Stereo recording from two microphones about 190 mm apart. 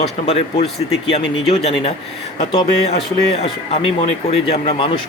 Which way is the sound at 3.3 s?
30° left (ahead or behind).